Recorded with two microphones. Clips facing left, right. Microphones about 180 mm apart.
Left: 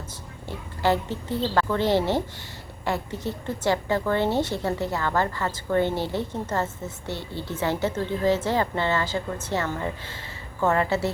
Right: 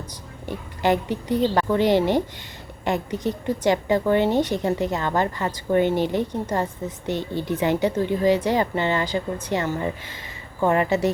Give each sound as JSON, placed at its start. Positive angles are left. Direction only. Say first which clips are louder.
{"t": 0.1, "sound": "a woman's voice", "louder": "right 4 dB", "side_deg": -15}